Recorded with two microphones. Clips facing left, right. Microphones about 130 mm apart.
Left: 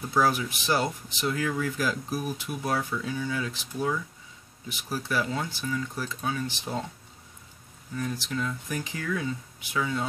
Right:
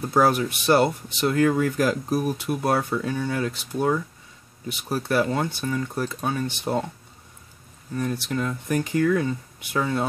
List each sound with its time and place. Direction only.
0.1 s speech: 55° right (ahead or behind)
7.9 s speech: 55° right (ahead or behind)